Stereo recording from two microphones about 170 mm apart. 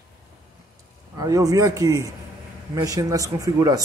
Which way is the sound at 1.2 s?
20° right (ahead or behind).